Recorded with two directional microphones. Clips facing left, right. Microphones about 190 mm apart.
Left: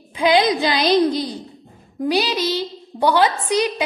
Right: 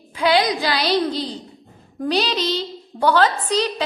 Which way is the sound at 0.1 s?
20° left (ahead or behind).